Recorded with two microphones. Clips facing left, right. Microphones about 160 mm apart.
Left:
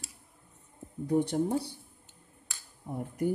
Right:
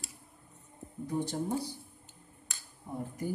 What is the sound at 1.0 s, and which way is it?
Speech, 65° left (ahead or behind).